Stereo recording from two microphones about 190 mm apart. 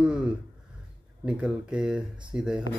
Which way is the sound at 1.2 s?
5° right (ahead or behind).